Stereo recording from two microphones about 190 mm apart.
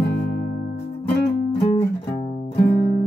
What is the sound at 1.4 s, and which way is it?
Music, 30° left (ahead or behind).